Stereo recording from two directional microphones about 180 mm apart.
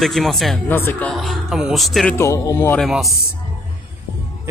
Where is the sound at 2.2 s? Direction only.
15° left (ahead or behind).